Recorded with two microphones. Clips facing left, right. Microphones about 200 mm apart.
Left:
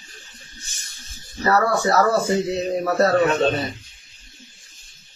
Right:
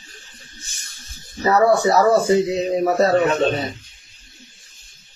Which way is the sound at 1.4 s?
20° right (ahead or behind).